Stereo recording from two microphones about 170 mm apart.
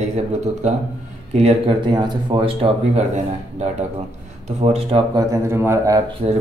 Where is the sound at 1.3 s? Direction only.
35° right (ahead or behind).